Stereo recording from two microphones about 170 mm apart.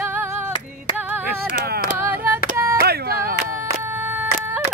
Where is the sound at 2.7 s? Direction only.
60° right (ahead or behind).